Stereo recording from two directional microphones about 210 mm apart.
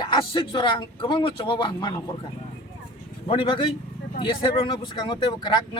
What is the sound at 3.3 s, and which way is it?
Speech, 25° left (ahead or behind).